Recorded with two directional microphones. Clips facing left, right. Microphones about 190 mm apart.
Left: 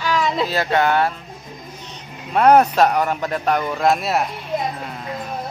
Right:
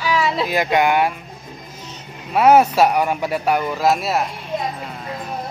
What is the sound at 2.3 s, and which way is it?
A man's voice, 5° right (ahead or behind).